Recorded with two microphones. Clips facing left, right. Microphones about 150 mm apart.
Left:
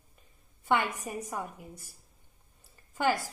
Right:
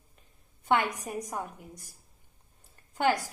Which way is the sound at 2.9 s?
Centre (ahead or behind).